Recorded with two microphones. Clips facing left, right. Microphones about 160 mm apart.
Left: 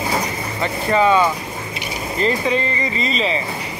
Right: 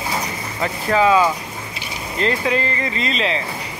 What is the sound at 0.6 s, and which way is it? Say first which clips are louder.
Speech: even; centre (ahead or behind).